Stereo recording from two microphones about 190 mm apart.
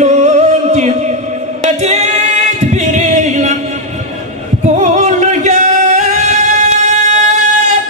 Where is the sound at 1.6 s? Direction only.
40° right (ahead or behind).